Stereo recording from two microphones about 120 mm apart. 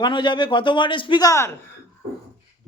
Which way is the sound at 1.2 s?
25° left (ahead or behind).